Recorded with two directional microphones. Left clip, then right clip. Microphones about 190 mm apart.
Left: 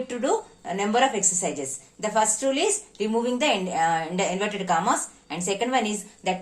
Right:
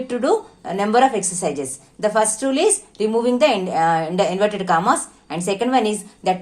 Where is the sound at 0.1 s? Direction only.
35° right (ahead or behind).